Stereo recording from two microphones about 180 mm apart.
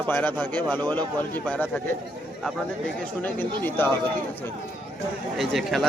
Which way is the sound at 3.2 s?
10° left (ahead or behind).